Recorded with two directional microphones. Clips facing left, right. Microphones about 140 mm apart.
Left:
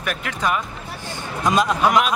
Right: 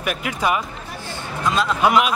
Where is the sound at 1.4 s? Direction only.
15° left (ahead or behind).